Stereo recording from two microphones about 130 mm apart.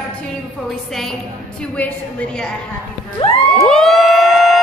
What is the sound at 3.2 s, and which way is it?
Crowd, 50° left (ahead or behind).